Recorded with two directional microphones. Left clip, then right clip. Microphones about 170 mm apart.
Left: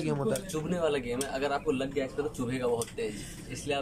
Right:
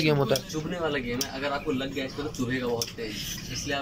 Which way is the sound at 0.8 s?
15° left (ahead or behind).